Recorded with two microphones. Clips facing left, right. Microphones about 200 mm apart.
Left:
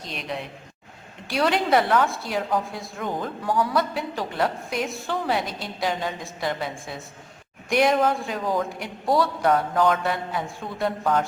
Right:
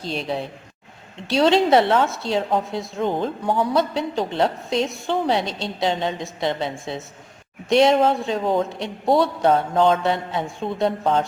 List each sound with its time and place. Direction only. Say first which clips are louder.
0.0 s a man's voice: right 6 dB; 30° right (ahead or behind)